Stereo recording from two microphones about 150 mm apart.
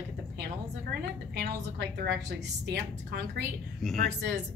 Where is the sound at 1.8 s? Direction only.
90° right.